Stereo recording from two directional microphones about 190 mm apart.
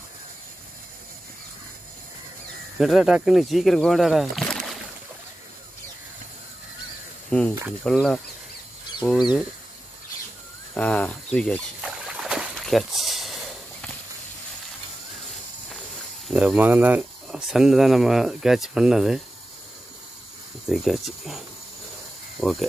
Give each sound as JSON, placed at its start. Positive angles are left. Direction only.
{"t": 2.8, "sound": "speech", "side_deg": 0}
{"t": 7.2, "sound": "speech", "side_deg": 5}
{"t": 9.0, "sound": "chicken", "side_deg": 10}
{"t": 10.7, "sound": "speech", "side_deg": 5}
{"t": 11.3, "sound": "trickle", "side_deg": 5}
{"t": 16.3, "sound": "speech", "side_deg": -5}
{"t": 20.6, "sound": "speech", "side_deg": 0}
{"t": 22.4, "sound": "speech", "side_deg": 0}